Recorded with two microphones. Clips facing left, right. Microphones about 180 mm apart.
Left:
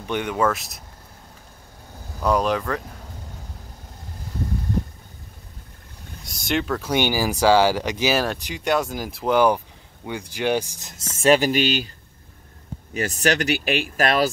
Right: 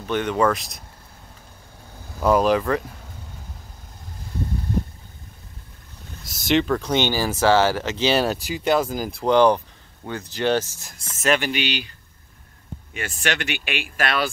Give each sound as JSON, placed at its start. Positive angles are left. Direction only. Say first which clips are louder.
{"t": 0.0, "sound": "speech", "louder": "right 2 dB", "side_deg": 15}
{"t": 2.2, "sound": "speech", "louder": "right 3 dB", "side_deg": 0}
{"t": 6.2, "sound": "speech", "louder": "right 4 dB", "side_deg": 0}
{"t": 8.3, "sound": "speech", "louder": "right 2 dB", "side_deg": -5}
{"t": 11.2, "sound": "speech", "louder": "left 5 dB", "side_deg": 35}
{"t": 12.9, "sound": "speech", "louder": "left 5 dB", "side_deg": 40}